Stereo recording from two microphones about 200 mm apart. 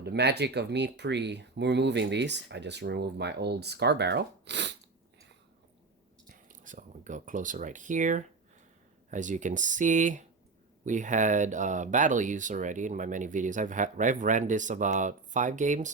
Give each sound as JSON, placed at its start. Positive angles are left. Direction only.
{"t": 0.0, "sound": "speech", "side_deg": -55}
{"t": 6.5, "sound": "speech", "side_deg": -40}